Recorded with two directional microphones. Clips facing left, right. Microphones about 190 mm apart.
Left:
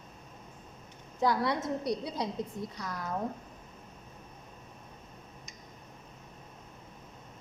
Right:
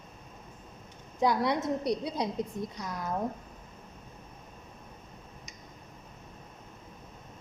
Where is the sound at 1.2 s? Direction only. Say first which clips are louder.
Right 2 dB; 20° right (ahead or behind).